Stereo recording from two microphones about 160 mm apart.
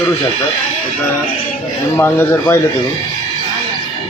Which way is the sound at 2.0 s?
15° left (ahead or behind).